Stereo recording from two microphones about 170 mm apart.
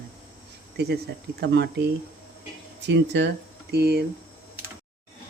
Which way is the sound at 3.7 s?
70° right (ahead or behind).